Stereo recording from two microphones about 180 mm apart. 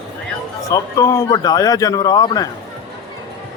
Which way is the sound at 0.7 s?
20° left (ahead or behind).